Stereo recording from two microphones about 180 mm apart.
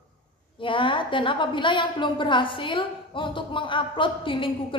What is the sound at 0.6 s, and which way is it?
A woman's voice, 30° left (ahead or behind).